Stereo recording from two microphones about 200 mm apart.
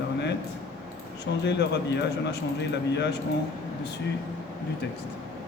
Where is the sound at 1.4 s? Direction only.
60° left (ahead or behind).